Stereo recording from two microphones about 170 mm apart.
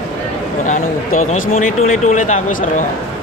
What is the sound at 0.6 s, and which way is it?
Speech, 50° left (ahead or behind).